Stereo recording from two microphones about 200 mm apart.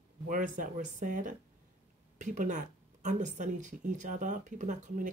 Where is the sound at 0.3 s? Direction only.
40° right (ahead or behind).